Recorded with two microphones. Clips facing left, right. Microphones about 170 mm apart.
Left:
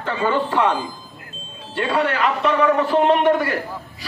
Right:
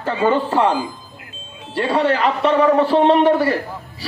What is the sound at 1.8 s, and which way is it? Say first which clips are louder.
A man's voice: right 3 dB; 30° right (ahead or behind).